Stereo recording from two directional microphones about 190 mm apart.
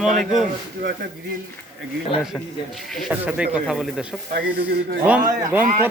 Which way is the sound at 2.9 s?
5° right (ahead or behind).